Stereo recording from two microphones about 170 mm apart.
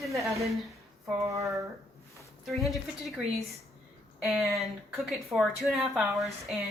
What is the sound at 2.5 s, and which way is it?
Speech, centre (ahead or behind).